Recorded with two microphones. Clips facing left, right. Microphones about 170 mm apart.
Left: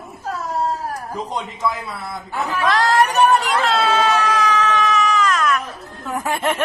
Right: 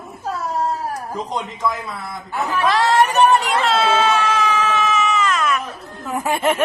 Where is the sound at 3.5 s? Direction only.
Centre (ahead or behind).